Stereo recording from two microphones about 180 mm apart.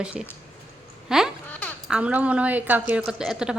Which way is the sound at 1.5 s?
10° left (ahead or behind).